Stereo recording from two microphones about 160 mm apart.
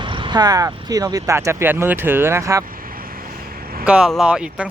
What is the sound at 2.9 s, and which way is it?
Vehicle, 65° right (ahead or behind).